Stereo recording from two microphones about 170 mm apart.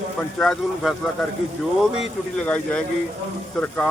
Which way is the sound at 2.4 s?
5° left (ahead or behind).